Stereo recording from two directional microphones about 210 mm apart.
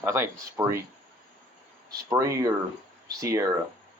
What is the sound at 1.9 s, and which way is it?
Speech, 15° right (ahead or behind).